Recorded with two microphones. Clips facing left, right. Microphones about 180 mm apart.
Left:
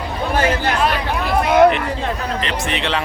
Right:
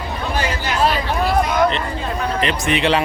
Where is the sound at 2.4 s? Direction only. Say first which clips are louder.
Right 4 dB; 10° right (ahead or behind).